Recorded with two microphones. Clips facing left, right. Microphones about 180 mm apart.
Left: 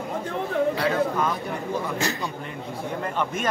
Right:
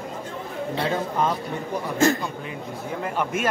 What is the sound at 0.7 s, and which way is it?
Speech, 25° right (ahead or behind).